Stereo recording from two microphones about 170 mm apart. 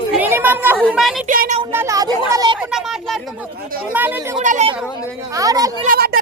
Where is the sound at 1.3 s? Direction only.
55° right (ahead or behind).